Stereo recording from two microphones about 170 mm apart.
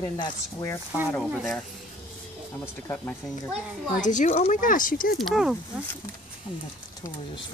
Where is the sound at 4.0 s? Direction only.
45° left (ahead or behind).